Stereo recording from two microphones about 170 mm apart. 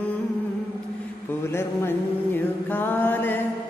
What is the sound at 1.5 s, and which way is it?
Mantra, 15° left (ahead or behind).